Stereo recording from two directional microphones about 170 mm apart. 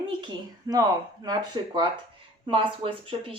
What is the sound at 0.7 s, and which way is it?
Speech, 20° right (ahead or behind).